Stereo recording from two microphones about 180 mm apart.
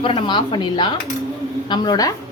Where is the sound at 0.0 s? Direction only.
30° left (ahead or behind).